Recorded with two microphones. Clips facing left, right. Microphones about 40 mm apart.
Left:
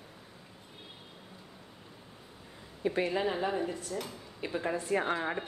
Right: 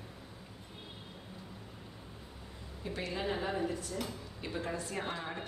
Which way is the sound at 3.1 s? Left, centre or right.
Centre.